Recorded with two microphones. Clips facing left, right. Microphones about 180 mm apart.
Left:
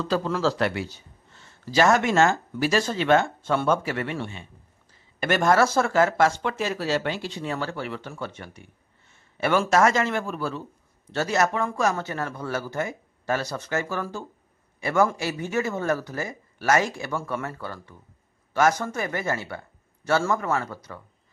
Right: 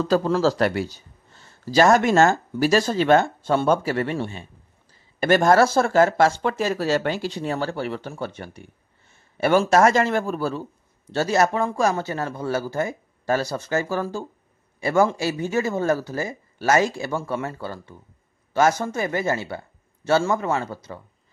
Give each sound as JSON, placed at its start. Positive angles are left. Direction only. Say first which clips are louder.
{"t": 0.0, "sound": "a man's voice", "louder": "right 5 dB", "side_deg": -45}